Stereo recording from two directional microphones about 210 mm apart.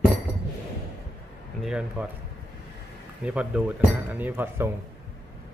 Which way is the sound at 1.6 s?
5° right (ahead or behind).